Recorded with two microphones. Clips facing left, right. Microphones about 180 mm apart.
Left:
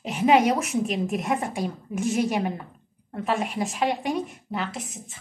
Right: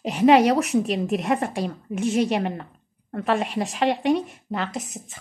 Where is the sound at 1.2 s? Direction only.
70° right (ahead or behind).